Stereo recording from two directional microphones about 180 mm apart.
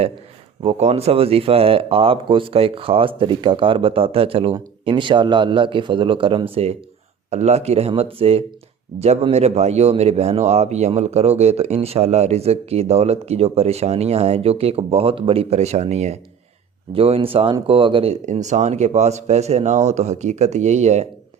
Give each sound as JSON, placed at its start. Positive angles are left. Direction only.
{"t": 0.6, "sound": "speech", "side_deg": -35}